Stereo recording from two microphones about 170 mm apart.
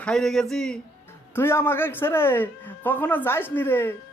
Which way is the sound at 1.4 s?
15° left (ahead or behind).